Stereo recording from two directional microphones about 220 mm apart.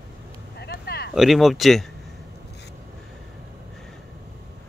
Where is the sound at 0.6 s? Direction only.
45° left (ahead or behind).